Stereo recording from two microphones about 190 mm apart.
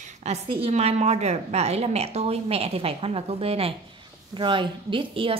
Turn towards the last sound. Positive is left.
turn(degrees=-25)  # may be behind; listen again after turning